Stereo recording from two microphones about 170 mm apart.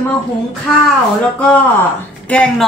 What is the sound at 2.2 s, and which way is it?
Speech, 5° left (ahead or behind).